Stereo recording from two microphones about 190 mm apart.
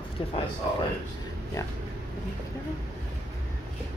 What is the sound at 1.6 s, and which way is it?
Speech, 15° left (ahead or behind).